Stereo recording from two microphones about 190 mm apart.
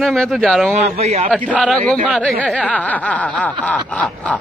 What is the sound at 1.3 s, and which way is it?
A man's voice, 5° left (ahead or behind).